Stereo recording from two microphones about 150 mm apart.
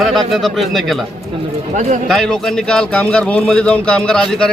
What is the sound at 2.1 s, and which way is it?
Speech, 5° left (ahead or behind).